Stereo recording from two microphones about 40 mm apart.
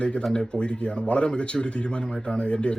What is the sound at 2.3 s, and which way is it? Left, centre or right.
Speech, left.